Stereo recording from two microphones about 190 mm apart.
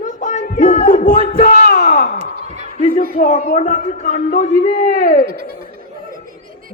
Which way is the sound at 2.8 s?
45° left (ahead or behind).